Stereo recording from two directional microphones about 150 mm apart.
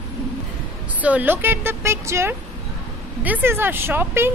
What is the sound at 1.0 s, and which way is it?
A woman's voice, 10° right (ahead or behind).